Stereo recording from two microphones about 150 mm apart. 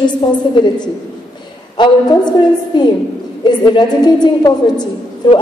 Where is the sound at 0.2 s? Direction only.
30° left (ahead or behind).